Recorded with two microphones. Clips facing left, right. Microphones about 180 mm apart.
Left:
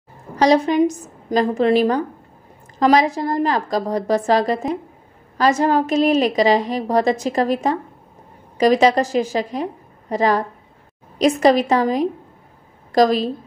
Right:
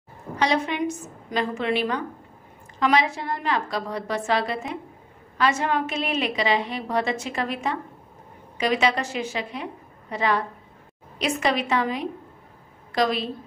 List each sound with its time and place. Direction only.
0.4 s a woman's voice: 40° left (ahead or behind)